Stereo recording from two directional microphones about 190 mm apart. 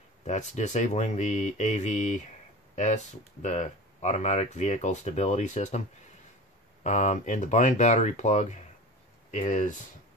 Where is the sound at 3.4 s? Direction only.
35° left (ahead or behind).